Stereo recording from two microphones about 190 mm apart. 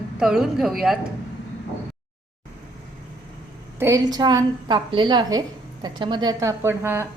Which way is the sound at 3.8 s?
15° right (ahead or behind).